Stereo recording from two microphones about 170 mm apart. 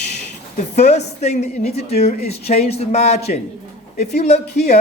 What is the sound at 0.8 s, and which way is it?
Speech, 40° left (ahead or behind).